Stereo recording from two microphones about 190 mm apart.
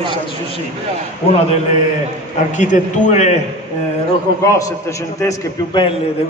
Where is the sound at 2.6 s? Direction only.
40° left (ahead or behind).